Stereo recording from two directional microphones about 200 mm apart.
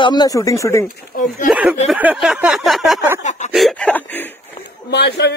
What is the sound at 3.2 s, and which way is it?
Speech, 35° left (ahead or behind).